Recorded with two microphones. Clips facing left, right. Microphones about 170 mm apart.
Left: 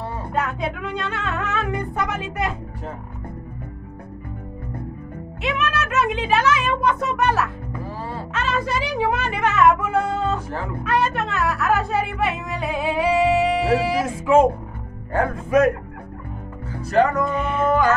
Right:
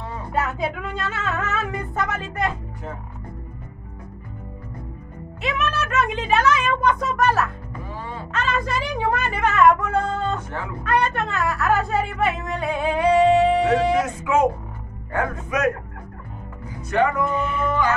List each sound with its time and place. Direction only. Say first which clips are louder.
0.3 s speech: right 1 dB; 5° right (ahead or behind)
5.4 s speech: left 1 dB; centre (ahead or behind)
14.2 s a man's voice: left 4 dB; 30° left (ahead or behind)
16.9 s a man's voice: left 3 dB; 40° left (ahead or behind)
17.6 s music: left 5 dB; 45° left (ahead or behind)